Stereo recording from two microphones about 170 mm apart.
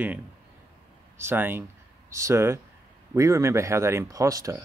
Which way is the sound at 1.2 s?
15° right (ahead or behind).